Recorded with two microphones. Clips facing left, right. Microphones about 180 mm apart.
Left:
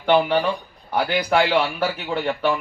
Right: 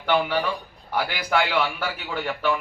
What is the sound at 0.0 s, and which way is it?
A man's voice, 30° left (ahead or behind).